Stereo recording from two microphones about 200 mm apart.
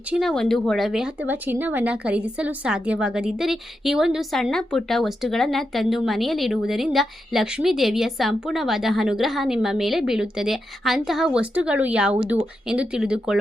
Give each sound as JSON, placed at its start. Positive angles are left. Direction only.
{"t": 0.1, "sound": "speech", "side_deg": 0}